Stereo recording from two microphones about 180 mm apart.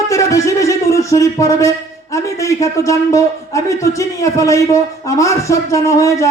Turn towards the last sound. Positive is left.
turn(degrees=15)  # may be behind; listen again after turning